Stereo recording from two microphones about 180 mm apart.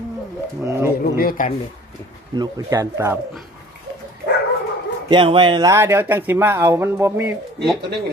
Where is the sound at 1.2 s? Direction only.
50° left (ahead or behind).